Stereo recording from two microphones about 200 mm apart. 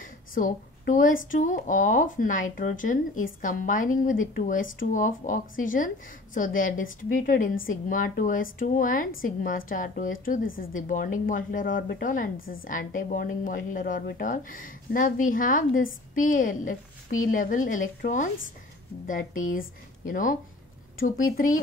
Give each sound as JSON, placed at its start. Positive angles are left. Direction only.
{"t": 0.0, "sound": "a woman's voice", "side_deg": 40}